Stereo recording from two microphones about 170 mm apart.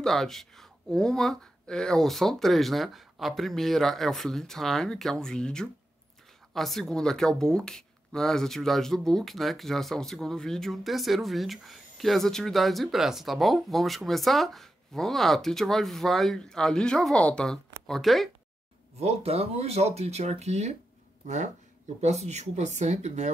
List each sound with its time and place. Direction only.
0.0 s speech: centre (ahead or behind)
18.9 s speech: 35° right (ahead or behind)
22.0 s speech: 40° right (ahead or behind)